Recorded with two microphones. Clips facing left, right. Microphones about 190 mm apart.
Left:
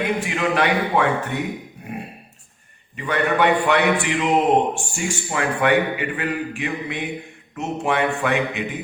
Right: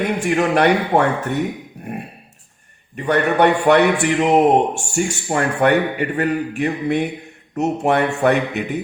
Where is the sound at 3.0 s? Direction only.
45° right (ahead or behind).